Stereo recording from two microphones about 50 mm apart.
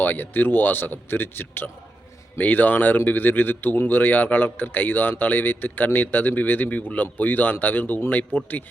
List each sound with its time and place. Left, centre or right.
0.0 s speech: left